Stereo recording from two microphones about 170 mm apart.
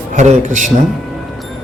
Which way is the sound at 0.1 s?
45° right (ahead or behind).